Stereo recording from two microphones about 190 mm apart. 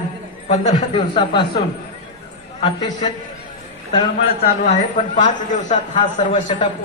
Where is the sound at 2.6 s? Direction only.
25° left (ahead or behind).